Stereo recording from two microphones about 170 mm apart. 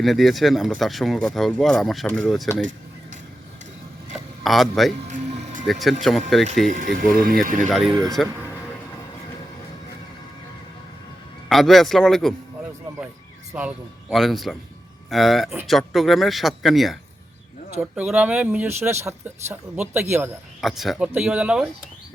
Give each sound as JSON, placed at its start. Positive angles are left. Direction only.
{"t": 0.0, "sound": "speech", "side_deg": 0}
{"t": 4.1, "sound": "a sound", "side_deg": 0}
{"t": 5.1, "sound": "music", "side_deg": -45}
{"t": 5.8, "sound": "speech", "side_deg": 0}
{"t": 6.7, "sound": "speech", "side_deg": -50}
{"t": 7.7, "sound": "speech", "side_deg": 0}
{"t": 11.4, "sound": "speech", "side_deg": 0}
{"t": 13.6, "sound": "speech", "side_deg": -5}